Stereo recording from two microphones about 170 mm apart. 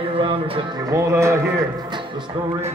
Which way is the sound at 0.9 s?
15° right (ahead or behind).